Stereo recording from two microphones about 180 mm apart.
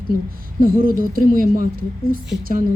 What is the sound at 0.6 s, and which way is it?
Speech, 50° right (ahead or behind).